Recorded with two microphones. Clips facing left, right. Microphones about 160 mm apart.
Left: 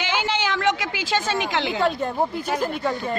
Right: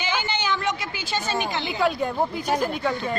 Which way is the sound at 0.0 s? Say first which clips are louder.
Left 2 dB; 90° left.